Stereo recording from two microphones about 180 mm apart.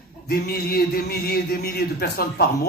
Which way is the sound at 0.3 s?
60° left (ahead or behind).